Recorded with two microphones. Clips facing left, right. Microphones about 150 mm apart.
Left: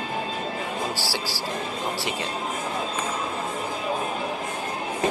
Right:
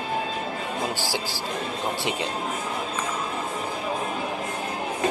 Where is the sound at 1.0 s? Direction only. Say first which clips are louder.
Right 1 dB; 20° right (ahead or behind).